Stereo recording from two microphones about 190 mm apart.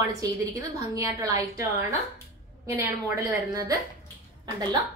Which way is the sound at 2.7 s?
15° right (ahead or behind).